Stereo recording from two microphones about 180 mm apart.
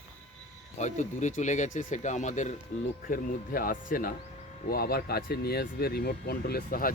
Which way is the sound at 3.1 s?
50° left (ahead or behind).